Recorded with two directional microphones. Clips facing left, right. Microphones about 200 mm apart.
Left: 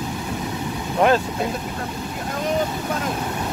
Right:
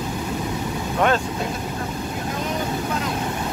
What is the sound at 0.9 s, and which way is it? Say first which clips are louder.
Speech: left 3 dB; 5° left (ahead or behind).